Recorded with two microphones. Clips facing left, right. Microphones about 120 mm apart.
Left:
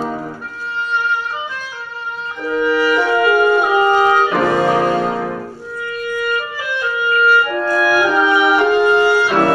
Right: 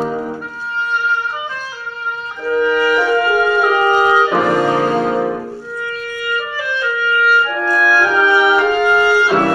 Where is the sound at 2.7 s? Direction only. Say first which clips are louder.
Left 1 dB; 5° left (ahead or behind).